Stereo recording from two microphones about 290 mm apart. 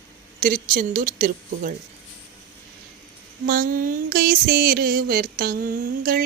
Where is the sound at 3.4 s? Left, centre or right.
Right.